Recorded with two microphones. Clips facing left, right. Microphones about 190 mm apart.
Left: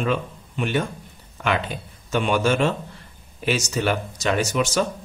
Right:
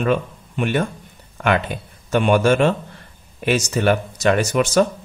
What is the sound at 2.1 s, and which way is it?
Speech, 55° right (ahead or behind).